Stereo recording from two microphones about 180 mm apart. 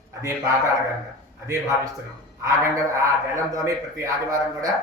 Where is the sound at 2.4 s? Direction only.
15° right (ahead or behind).